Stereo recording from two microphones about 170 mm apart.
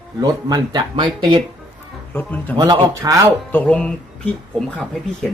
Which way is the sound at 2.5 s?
20° right (ahead or behind).